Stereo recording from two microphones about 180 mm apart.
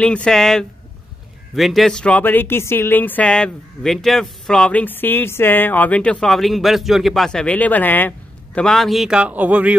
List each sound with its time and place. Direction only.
0.0 s a man's voice: 5° left (ahead or behind)